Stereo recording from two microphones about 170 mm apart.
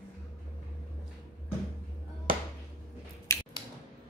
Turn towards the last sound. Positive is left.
turn(degrees=15)  # may be behind; listen again after turning